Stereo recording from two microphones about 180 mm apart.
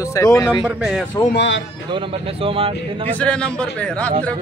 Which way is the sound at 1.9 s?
30° right (ahead or behind).